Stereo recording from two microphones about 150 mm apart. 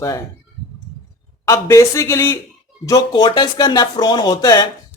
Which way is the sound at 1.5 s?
20° left (ahead or behind).